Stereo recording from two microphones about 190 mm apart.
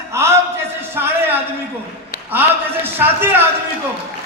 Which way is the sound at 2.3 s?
10° right (ahead or behind).